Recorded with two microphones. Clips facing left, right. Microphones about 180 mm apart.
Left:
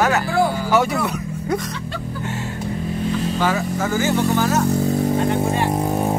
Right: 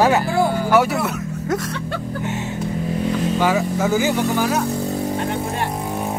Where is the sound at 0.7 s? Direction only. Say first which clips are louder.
Right 1 dB; 5° right (ahead or behind).